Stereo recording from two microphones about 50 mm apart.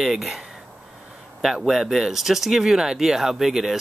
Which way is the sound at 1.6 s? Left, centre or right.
Centre.